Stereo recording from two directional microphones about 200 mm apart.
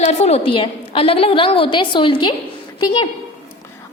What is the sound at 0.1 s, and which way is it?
A woman's voice, 30° left (ahead or behind).